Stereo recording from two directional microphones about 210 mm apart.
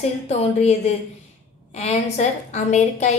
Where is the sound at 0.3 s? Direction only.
30° left (ahead or behind).